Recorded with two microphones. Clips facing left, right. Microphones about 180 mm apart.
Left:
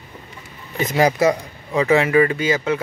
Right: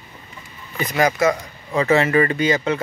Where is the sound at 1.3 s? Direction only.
15° left (ahead or behind).